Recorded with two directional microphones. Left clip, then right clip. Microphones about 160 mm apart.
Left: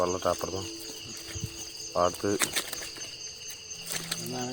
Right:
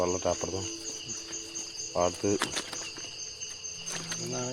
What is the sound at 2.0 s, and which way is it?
Speech, 5° right (ahead or behind).